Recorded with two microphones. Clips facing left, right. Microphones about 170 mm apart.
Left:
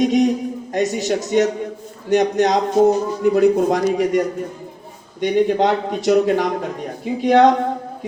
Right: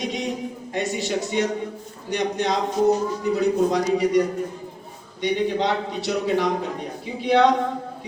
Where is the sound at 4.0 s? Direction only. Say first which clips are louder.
Left 2 dB; 50° left (ahead or behind).